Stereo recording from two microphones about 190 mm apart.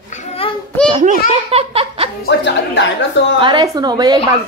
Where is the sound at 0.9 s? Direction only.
35° right (ahead or behind).